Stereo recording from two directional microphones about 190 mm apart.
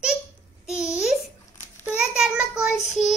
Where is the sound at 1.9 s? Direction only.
5° right (ahead or behind).